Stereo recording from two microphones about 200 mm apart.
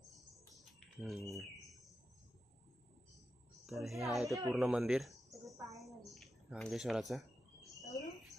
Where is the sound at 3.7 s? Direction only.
Centre (ahead or behind).